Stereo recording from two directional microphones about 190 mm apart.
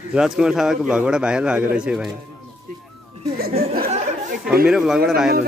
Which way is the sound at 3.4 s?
55° right (ahead or behind).